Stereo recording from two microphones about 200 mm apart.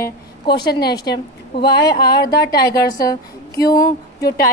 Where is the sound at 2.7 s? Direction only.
20° left (ahead or behind).